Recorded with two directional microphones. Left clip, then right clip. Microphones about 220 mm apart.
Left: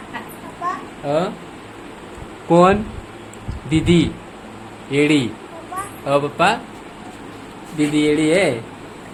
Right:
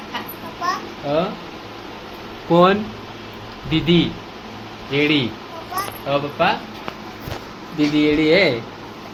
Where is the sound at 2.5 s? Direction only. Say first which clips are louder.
Left 1 dB; 15° left (ahead or behind).